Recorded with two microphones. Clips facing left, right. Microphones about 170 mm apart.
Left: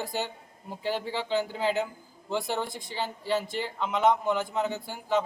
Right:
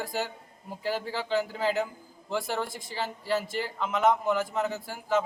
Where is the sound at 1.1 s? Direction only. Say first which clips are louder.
Even; centre (ahead or behind).